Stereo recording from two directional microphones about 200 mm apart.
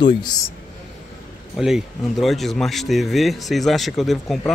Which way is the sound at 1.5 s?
5° right (ahead or behind).